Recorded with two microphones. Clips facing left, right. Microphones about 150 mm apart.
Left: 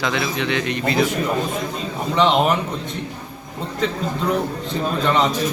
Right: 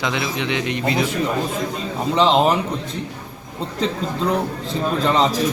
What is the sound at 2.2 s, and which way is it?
Speech, 30° right (ahead or behind).